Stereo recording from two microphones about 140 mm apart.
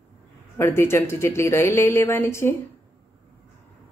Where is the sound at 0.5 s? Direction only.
20° left (ahead or behind).